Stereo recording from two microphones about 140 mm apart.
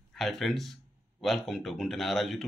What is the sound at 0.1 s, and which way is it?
Speech, centre (ahead or behind).